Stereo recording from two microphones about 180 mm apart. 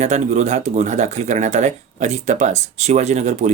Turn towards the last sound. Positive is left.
turn(degrees=-40)  # may be behind; listen again after turning